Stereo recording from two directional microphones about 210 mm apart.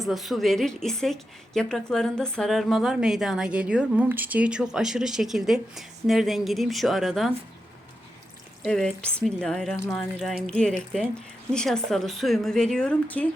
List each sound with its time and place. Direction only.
0.0 s a woman's voice: centre (ahead or behind)
8.6 s a woman's voice: 5° left (ahead or behind)